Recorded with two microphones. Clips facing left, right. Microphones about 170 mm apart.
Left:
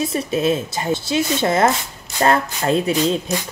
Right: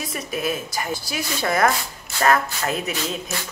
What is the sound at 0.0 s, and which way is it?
A woman's voice, 25° left (ahead or behind).